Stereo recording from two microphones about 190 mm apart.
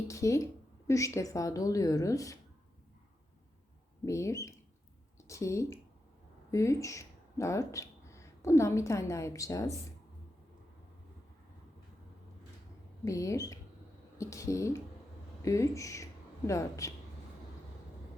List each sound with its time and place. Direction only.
0.1 s speech: 15° left (ahead or behind)
4.0 s speech: 15° left (ahead or behind)
13.1 s speech: 15° left (ahead or behind)